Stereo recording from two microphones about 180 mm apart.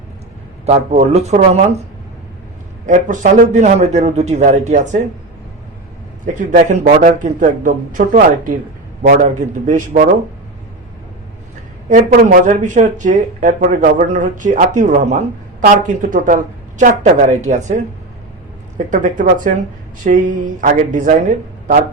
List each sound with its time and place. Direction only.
0.6 s a man's voice: 35° right (ahead or behind)
2.8 s a man's voice: 45° right (ahead or behind)
6.2 s speech: 45° right (ahead or behind)
11.9 s speech: 45° right (ahead or behind)
18.9 s speech: 45° right (ahead or behind)